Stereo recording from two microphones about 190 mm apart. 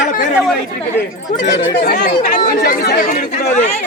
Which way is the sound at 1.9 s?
55° left (ahead or behind).